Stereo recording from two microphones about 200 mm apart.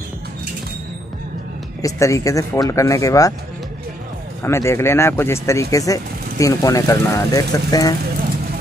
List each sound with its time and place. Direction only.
1.8 s speech: 15° left (ahead or behind)
4.4 s speech: 15° left (ahead or behind)